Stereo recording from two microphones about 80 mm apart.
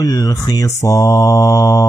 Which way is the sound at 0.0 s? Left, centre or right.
Left.